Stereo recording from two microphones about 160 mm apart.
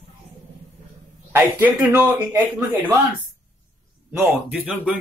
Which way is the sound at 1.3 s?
10° right (ahead or behind).